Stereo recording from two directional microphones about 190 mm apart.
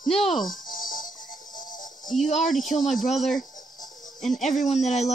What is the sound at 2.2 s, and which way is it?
Speech, 40° left (ahead or behind).